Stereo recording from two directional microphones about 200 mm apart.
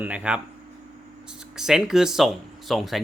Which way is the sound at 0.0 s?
10° right (ahead or behind).